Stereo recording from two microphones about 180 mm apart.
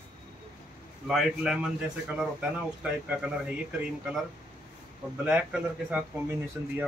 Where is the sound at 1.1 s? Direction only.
Centre (ahead or behind).